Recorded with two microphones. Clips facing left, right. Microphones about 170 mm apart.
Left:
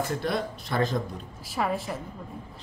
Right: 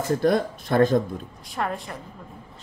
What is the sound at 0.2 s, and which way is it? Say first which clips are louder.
Speech: right 8 dB; 50° right (ahead or behind).